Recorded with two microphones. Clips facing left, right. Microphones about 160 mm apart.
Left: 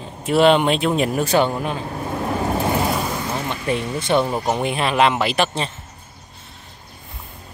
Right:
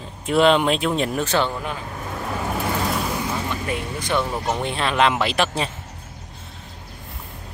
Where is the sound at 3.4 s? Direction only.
25° left (ahead or behind); by 5.7 s centre (ahead or behind).